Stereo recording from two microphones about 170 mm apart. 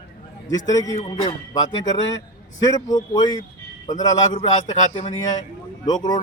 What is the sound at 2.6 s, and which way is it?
Speech, 20° left (ahead or behind).